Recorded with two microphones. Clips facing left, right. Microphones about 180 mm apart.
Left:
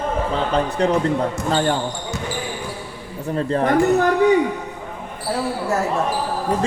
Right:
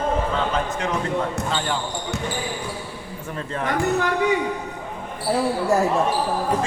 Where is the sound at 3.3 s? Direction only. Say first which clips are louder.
Left 8 dB; 35° left (ahead or behind).